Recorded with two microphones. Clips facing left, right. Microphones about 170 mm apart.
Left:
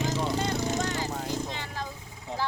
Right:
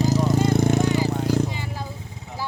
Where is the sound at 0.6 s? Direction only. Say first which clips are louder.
Right 9 dB; 60° right (ahead or behind).